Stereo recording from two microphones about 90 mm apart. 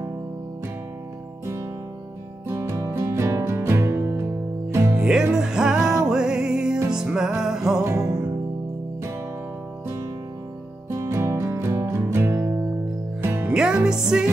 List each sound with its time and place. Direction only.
2.4 s music: 30° right (ahead or behind)
5.0 s music: 10° right (ahead or behind)
7.8 s music: 40° right (ahead or behind)
10.9 s music: 30° right (ahead or behind)
13.5 s music: 10° right (ahead or behind)